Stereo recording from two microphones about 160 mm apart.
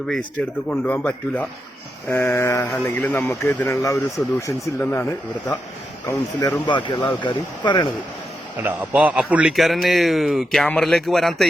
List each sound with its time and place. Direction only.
0.7 s speech: 10° left (ahead or behind)
6.7 s speech: 30° left (ahead or behind)
8.6 s a man's voice: 10° right (ahead or behind)